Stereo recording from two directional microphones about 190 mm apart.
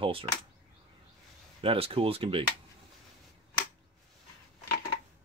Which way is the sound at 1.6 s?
30° right (ahead or behind).